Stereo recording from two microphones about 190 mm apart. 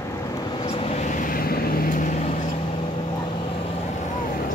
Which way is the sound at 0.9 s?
45° left (ahead or behind).